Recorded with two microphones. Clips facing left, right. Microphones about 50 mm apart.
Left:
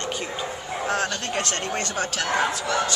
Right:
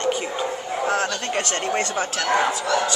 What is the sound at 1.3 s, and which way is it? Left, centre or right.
Speech, right.